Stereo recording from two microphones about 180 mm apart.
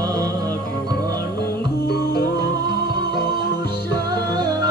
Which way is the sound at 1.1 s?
60° left (ahead or behind).